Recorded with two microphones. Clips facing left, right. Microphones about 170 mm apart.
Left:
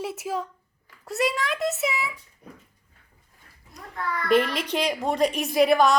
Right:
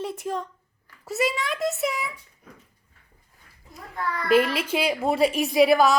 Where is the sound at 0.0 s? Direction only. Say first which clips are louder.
Even; 5° left (ahead or behind).